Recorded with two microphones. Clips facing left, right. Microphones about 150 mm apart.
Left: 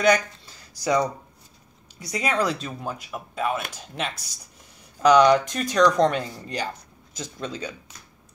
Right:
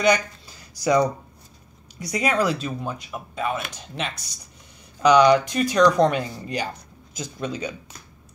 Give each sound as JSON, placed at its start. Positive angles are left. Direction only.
{"t": 0.5, "sound": "dishes", "side_deg": -15}
{"t": 2.0, "sound": "speech", "side_deg": -15}